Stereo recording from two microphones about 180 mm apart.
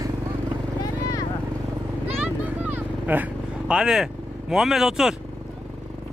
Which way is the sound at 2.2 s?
10° right (ahead or behind).